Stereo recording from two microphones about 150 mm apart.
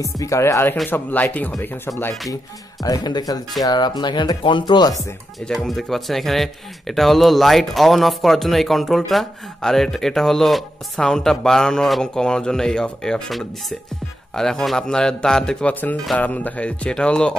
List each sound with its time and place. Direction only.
0.0 s speech: 20° left (ahead or behind)
2.8 s speech: 25° left (ahead or behind)
5.4 s a man's voice: 5° left (ahead or behind)